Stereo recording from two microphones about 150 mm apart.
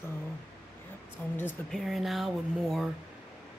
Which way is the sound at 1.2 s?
15° left (ahead or behind).